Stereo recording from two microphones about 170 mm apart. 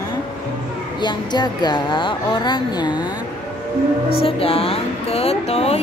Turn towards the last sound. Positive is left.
turn(degrees=40)  # may be behind; listen again after turning